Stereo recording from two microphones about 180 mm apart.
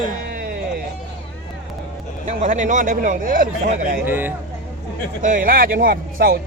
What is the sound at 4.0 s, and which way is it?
Speech, 10° right (ahead or behind).